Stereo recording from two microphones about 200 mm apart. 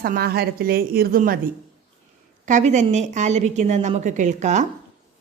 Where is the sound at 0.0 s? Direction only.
50° right (ahead or behind).